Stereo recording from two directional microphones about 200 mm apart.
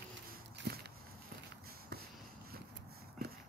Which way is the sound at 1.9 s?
55° right (ahead or behind).